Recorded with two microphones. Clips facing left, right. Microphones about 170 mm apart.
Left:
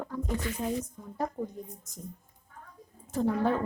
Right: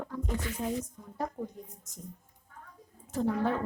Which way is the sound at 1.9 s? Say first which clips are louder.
Left 2 dB; 35° left (ahead or behind).